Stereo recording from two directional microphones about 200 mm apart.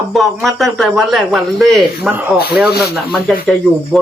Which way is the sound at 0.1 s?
Centre (ahead or behind).